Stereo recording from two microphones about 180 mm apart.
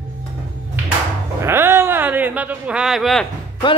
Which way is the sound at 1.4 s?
10° right (ahead or behind).